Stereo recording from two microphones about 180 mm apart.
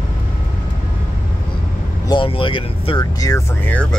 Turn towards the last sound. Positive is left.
turn(degrees=15)  # may be behind; listen again after turning